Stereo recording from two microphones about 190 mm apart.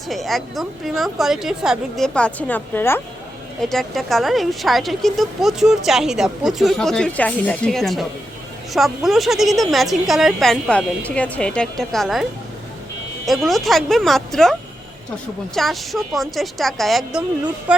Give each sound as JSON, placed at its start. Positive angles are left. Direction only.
{"t": 0.1, "sound": "speech", "side_deg": 0}
{"t": 13.2, "sound": "speech", "side_deg": 0}
{"t": 15.5, "sound": "speech", "side_deg": 0}